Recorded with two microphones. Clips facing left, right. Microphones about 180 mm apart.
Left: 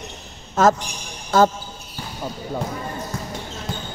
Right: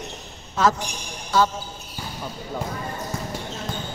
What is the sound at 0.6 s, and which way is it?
Speech, 45° left (ahead or behind).